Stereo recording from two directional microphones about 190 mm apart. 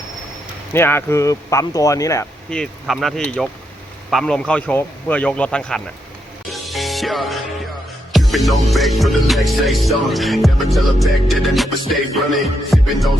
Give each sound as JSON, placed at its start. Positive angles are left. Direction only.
{"t": 0.7, "sound": "speech", "side_deg": 10}
{"t": 2.5, "sound": "music", "side_deg": 0}